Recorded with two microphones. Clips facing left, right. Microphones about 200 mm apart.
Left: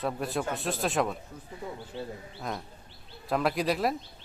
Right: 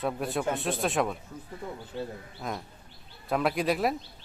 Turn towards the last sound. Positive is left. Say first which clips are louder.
# right 1 dB
turn(degrees=0)  # may be behind; listen again after turning